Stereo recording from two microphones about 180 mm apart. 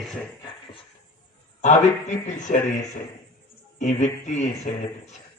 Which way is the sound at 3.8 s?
40° left (ahead or behind).